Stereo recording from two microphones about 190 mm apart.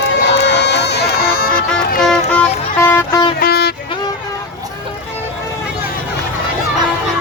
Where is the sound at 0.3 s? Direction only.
65° left (ahead or behind).